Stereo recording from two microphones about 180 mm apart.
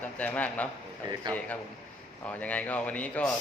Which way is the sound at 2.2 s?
10° left (ahead or behind).